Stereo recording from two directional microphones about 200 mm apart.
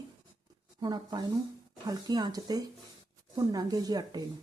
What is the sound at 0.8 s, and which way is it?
Speech, 20° right (ahead or behind).